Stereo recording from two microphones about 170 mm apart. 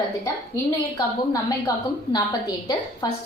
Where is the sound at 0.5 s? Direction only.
20° left (ahead or behind).